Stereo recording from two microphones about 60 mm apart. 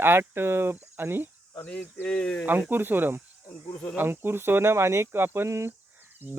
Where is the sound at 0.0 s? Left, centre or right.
Right.